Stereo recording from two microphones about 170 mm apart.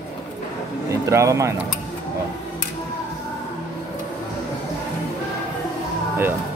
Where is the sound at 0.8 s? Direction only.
15° right (ahead or behind).